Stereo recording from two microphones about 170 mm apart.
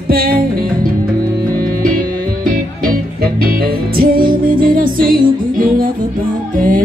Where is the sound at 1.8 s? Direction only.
55° right (ahead or behind).